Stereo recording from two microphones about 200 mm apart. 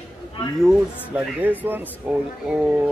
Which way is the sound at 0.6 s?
5° right (ahead or behind).